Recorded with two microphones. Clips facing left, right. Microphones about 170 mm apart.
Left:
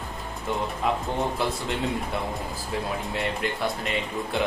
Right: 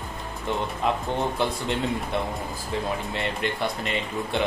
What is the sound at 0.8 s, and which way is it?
Speech, centre (ahead or behind).